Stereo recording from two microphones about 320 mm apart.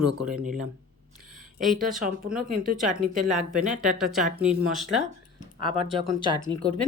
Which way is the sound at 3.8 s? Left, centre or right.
Centre.